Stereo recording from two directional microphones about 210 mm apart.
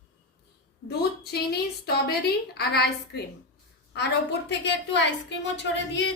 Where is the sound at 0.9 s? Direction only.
50° left (ahead or behind).